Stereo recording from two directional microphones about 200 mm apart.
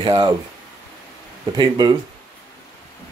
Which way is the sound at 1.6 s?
20° right (ahead or behind).